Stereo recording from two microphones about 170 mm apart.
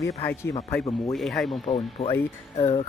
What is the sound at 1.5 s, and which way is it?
Speech, 35° left (ahead or behind).